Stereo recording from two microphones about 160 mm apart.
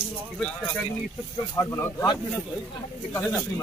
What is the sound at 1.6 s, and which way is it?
Speech, 15° left (ahead or behind).